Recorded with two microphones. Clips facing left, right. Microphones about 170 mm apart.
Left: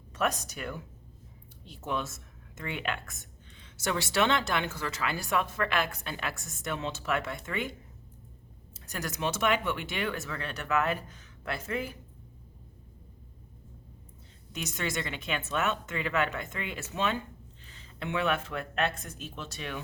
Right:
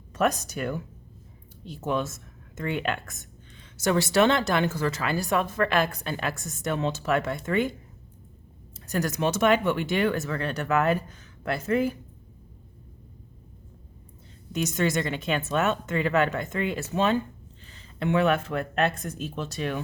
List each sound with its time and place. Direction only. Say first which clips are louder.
0.1 s speech: right 6 dB; 40° right (ahead or behind)
8.7 s speech: right 9 dB; 40° right (ahead or behind)
14.5 s speech: right 9 dB; 45° right (ahead or behind)